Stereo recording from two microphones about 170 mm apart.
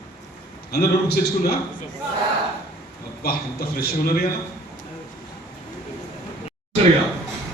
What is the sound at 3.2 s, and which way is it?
A man's voice, 65° left (ahead or behind).